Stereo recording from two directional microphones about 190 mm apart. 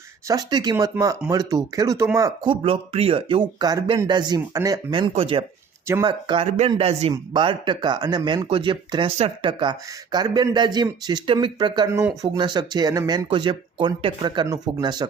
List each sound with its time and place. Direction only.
0.3 s speech: 20° right (ahead or behind)
2.5 s speech: 30° right (ahead or behind)